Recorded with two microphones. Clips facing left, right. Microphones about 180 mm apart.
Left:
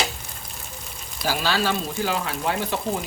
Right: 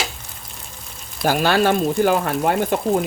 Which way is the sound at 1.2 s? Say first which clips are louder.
Right 7 dB; 55° right (ahead or behind).